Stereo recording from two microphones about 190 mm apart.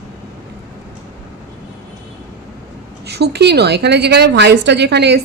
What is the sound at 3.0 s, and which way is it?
A woman's voice, 60° right (ahead or behind).